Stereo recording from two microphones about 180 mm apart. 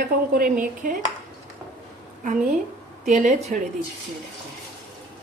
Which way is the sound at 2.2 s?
45° right (ahead or behind).